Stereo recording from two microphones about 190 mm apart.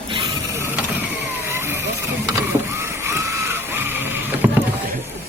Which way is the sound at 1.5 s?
15° right (ahead or behind).